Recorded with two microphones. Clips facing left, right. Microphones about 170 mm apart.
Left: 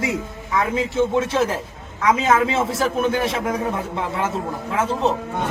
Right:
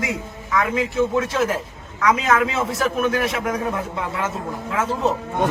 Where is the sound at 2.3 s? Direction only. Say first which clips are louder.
Left 2 dB; 30° left (ahead or behind).